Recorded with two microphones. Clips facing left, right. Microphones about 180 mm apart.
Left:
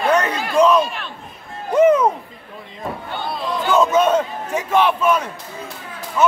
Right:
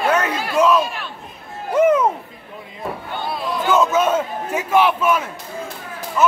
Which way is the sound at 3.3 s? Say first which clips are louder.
Right 1 dB; 5° right (ahead or behind).